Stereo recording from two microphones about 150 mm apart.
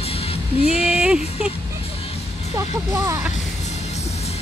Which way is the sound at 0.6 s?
45° left (ahead or behind).